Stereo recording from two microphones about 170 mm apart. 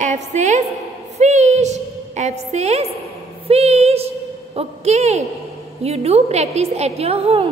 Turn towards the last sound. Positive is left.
turn(degrees=-35)  # may be behind; listen again after turning